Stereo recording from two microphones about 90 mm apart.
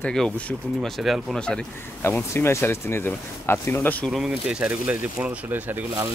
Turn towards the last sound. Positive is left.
turn(degrees=-20)  # may be behind; listen again after turning